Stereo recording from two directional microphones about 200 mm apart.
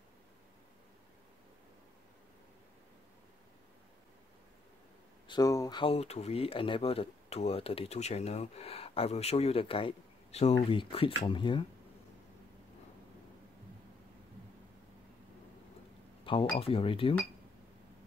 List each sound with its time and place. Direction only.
5.3 s speech: 20° left (ahead or behind)
16.5 s speech: 30° left (ahead or behind)